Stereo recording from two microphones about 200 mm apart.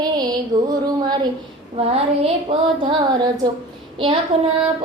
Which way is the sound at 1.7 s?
30° right (ahead or behind).